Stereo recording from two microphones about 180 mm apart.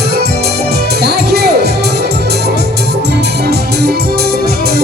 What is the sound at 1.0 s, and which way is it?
Music, 60° right (ahead or behind).